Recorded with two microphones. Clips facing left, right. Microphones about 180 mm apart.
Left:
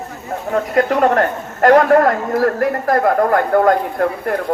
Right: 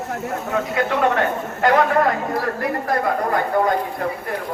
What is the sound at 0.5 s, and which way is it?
A woman's voice, 50° left (ahead or behind).